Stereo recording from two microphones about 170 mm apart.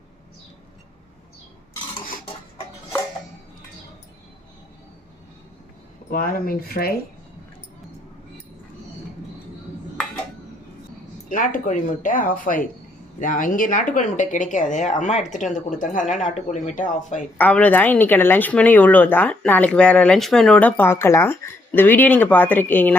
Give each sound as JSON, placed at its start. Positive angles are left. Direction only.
{"t": 6.1, "sound": "speech", "side_deg": 55}
{"t": 11.3, "sound": "speech", "side_deg": 50}
{"t": 17.3, "sound": "a woman's voice", "side_deg": 10}